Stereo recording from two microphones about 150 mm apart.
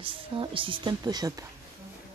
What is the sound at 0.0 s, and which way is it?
Speech, 35° right (ahead or behind).